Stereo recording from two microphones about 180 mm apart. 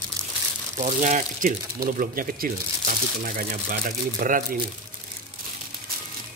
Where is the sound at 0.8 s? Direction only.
45° right (ahead or behind).